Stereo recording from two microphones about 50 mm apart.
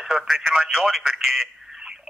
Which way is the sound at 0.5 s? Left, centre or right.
Centre.